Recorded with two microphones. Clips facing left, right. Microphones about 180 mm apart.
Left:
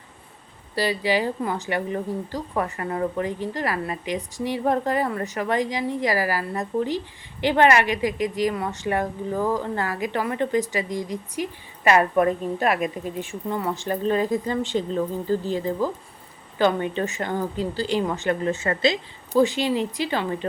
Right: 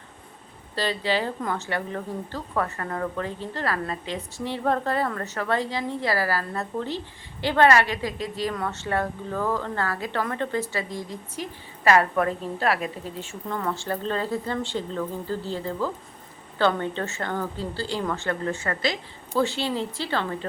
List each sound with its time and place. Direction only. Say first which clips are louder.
0.8 s a woman's voice: left 3 dB; 10° left (ahead or behind)